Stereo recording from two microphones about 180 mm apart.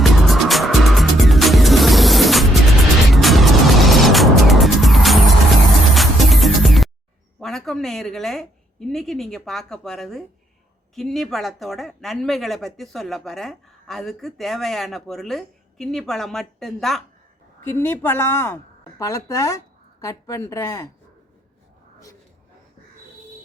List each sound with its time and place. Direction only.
0.0 s music: centre (ahead or behind)
7.3 s speech: centre (ahead or behind)
17.6 s a woman's voice: 15° left (ahead or behind)